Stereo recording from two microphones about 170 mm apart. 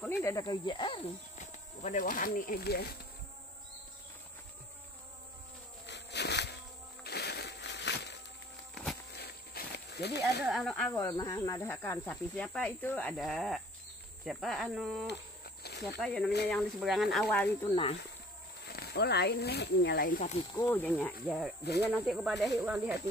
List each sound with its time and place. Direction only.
0.0 s speech: 15° left (ahead or behind)
1.4 s speech: 45° left (ahead or behind); by 2.9 s 70° left (ahead or behind)
5.9 s walk: 85° left
7.0 s a sound: 70° left (ahead or behind); by 8.2 s 90° left
9.1 s a sound: 70° left (ahead or behind)
10.4 s speech: centre (ahead or behind)
11.0 s speech: 20° left (ahead or behind); by 15.0 s centre (ahead or behind)
15.0 s insect: 75° left (ahead or behind)
16.0 s speech: 5° left (ahead or behind)
18.7 s speech: 65° left (ahead or behind)
20.1 s speech: 55° left (ahead or behind)
20.5 s speech: 10° left (ahead or behind); by 22.9 s 10° right (ahead or behind)